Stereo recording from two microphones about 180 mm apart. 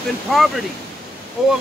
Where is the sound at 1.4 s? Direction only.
Centre (ahead or behind).